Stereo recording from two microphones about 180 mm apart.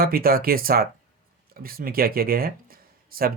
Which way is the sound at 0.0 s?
55° right (ahead or behind).